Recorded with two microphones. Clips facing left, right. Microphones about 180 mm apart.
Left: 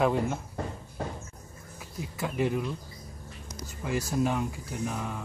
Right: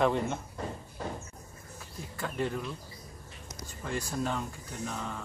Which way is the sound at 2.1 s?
10° left (ahead or behind).